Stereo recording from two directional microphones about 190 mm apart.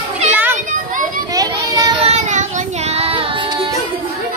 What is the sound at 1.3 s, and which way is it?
Child singing, 20° right (ahead or behind).